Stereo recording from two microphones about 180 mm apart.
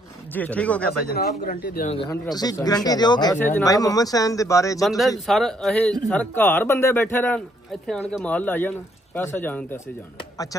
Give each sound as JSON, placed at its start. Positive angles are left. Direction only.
{"t": 0.3, "sound": "speech", "side_deg": 10}
{"t": 0.8, "sound": "a man's voice", "side_deg": 60}
{"t": 2.0, "sound": "speech", "side_deg": 20}
{"t": 3.3, "sound": "speech", "side_deg": 10}
{"t": 4.8, "sound": "speech", "side_deg": 0}